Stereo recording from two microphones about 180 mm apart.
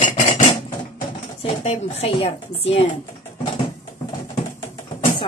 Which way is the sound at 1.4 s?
35° left (ahead or behind).